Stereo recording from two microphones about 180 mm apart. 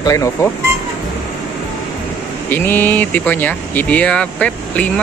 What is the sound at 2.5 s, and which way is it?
Speech, 10° left (ahead or behind).